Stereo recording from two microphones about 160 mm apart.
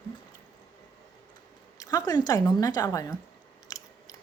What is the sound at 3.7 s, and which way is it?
Scissors, 25° left (ahead or behind).